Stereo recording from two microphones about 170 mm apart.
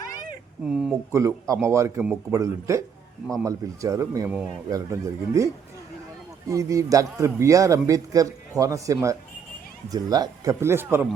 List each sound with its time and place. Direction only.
0.6 s speech: 5° right (ahead or behind)
1.1 s a man's voice: 20° right (ahead or behind)
6.5 s a man's voice: 20° right (ahead or behind)